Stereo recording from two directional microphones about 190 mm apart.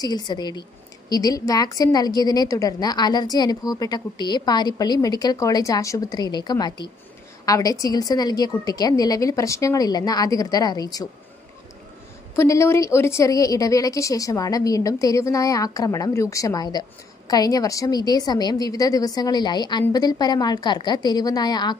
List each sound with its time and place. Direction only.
0.0 s a woman's voice: 20° left (ahead or behind)
12.4 s a woman's voice: 15° left (ahead or behind)